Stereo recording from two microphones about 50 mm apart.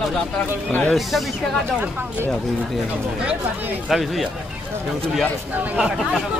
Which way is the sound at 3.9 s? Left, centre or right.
Centre.